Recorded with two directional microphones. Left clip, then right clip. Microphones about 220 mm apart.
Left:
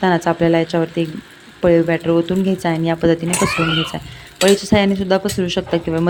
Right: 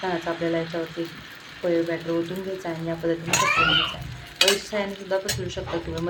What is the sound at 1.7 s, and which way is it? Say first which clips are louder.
A woman's voice: left 10 dB; 50° left (ahead or behind).